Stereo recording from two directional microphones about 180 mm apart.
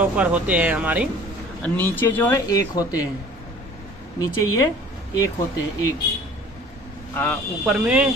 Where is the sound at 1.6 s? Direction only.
10° left (ahead or behind).